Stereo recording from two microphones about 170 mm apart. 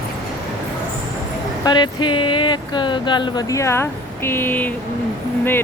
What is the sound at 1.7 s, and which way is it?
Speech, 25° left (ahead or behind).